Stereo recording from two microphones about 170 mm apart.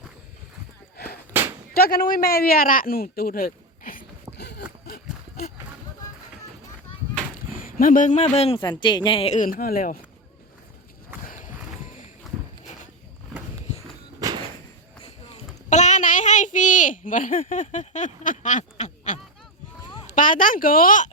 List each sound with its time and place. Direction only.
0.9 s whip: 65° left (ahead or behind)
1.7 s speech: 60° left (ahead or behind)
4.4 s a sound: 70° left (ahead or behind)
7.3 s speech: 55° left (ahead or behind)
11.2 s walk: 50° left (ahead or behind)
12.3 s walk: centre (ahead or behind)
14.2 s thump: 20° right (ahead or behind)
15.0 s child singing: 40° left (ahead or behind)
20.1 s speech: 50° left (ahead or behind)